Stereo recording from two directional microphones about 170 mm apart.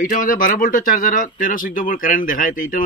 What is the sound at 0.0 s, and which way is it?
Speech, 50° left (ahead or behind).